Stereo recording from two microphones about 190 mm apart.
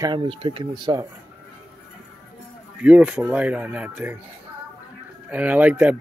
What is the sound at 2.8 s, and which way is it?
Speech, 5° right (ahead or behind).